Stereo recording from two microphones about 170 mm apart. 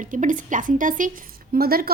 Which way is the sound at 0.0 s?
50° right (ahead or behind).